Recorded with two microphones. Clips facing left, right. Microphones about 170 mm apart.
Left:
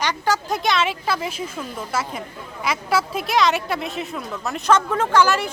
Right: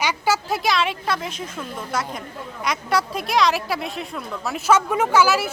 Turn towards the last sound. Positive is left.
turn(degrees=-5)  # may be behind; listen again after turning